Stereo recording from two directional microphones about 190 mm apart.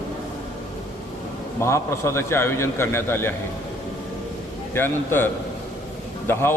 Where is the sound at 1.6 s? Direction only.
15° left (ahead or behind).